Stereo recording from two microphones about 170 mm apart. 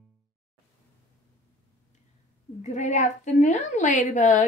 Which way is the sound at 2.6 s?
45° left (ahead or behind).